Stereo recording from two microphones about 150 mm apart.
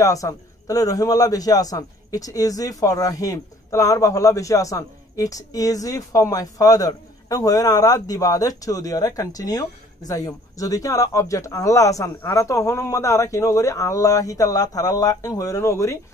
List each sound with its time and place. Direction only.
0.0 s a man's voice: 20° left (ahead or behind)